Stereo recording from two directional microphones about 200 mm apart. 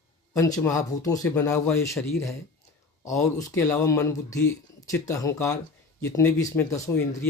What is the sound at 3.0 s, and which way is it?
Speech, 15° left (ahead or behind).